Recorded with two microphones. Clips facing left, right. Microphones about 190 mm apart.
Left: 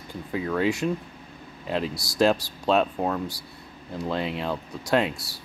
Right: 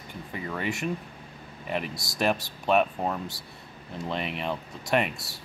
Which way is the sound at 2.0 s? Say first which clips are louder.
Left 7 dB; 20° right (ahead or behind).